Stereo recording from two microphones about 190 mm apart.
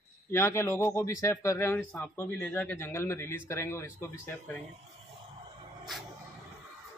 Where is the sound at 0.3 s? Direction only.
15° left (ahead or behind).